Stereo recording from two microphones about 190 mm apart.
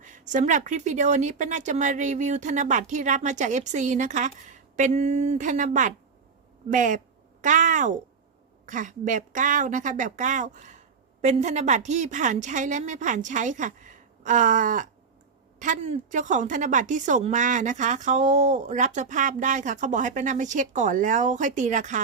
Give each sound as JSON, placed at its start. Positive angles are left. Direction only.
{"t": 0.0, "sound": "a woman's voice", "side_deg": -40}